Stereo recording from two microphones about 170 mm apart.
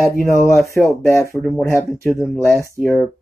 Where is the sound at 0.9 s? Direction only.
15° left (ahead or behind).